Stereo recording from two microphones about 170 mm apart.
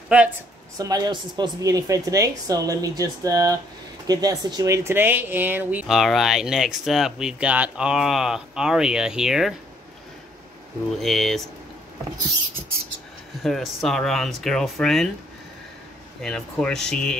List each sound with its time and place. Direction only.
0.7 s a woman's voice: 20° right (ahead or behind); by 9.6 s centre (ahead or behind)
11.0 s speech: centre (ahead or behind)
13.4 s speech: centre (ahead or behind)
16.2 s speech: 5° left (ahead or behind)